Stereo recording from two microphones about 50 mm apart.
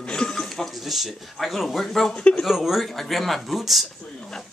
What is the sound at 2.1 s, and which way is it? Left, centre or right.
Speech, centre.